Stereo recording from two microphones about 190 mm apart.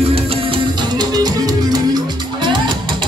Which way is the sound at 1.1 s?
20° right (ahead or behind).